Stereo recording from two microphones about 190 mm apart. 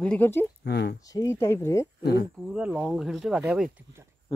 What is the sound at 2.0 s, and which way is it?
Speech, 60° left (ahead or behind).